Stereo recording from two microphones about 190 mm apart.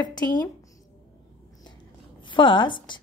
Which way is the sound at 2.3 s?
25° left (ahead or behind).